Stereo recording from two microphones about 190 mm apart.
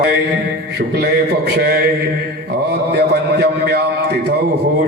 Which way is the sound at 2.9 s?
60° right (ahead or behind).